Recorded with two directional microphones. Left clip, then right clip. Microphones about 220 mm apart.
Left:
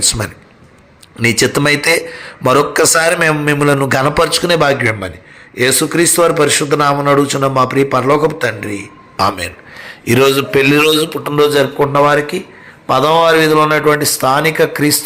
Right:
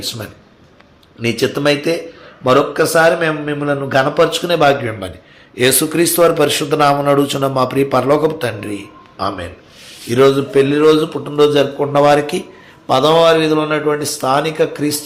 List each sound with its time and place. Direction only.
0.0 s a man's voice: 20° left (ahead or behind)
9.1 s a man's voice: 30° left (ahead or behind)
11.9 s speech: centre (ahead or behind)
12.9 s a man's voice: 10° left (ahead or behind)